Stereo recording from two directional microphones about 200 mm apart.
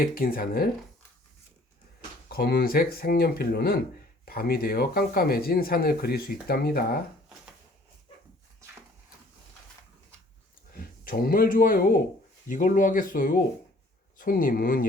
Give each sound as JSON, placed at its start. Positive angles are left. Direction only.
{"t": 0.0, "sound": "speech", "side_deg": 45}
{"t": 2.3, "sound": "speech", "side_deg": 50}
{"t": 10.8, "sound": "speech", "side_deg": 45}